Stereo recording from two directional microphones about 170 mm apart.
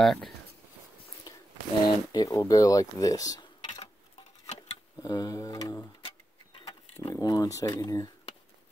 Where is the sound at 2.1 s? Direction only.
20° left (ahead or behind).